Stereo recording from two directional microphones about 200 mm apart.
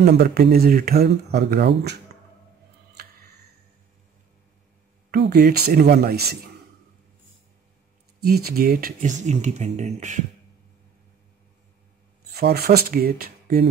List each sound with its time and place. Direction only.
0.0 s speech: 55° right (ahead or behind)
3.0 s a sound: 50° right (ahead or behind)
5.1 s speech: 55° right (ahead or behind)
8.5 s speech: 50° right (ahead or behind)
12.4 s speech: 50° right (ahead or behind)